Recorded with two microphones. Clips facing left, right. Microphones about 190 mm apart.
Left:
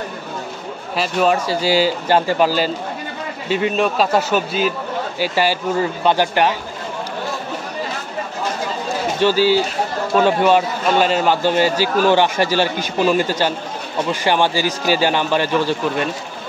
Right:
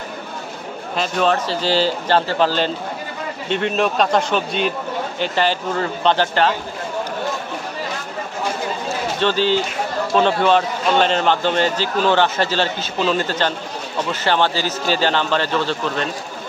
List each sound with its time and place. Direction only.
0.9 s a man's voice: 10° left (ahead or behind)
9.2 s a man's voice: 10° left (ahead or behind)